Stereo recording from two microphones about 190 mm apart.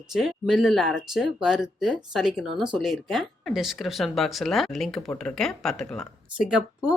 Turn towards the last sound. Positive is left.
turn(degrees=-5)  # may be behind; listen again after turning